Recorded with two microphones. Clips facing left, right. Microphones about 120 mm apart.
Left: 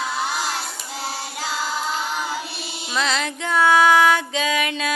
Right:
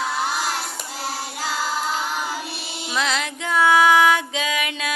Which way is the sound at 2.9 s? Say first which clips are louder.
Left 1 dB; 10° right (ahead or behind).